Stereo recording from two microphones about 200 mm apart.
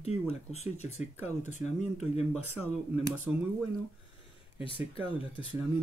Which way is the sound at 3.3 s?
5° right (ahead or behind).